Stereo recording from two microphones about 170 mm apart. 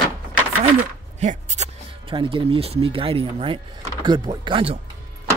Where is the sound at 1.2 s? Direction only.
40° right (ahead or behind).